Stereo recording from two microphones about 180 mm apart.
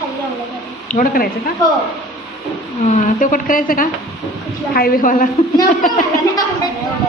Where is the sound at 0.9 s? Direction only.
55° left (ahead or behind).